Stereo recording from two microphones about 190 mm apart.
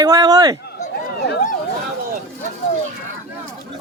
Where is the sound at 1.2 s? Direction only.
60° left (ahead or behind).